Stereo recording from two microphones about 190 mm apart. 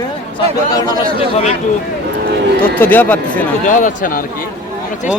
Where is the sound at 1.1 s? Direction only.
35° left (ahead or behind).